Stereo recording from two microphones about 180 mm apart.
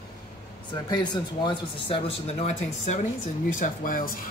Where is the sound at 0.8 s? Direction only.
25° left (ahead or behind).